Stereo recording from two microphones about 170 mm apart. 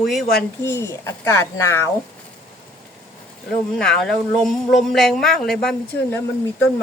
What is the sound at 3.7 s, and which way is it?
Speech, 5° left (ahead or behind).